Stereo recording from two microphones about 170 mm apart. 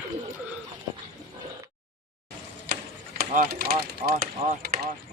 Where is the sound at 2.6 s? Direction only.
55° right (ahead or behind).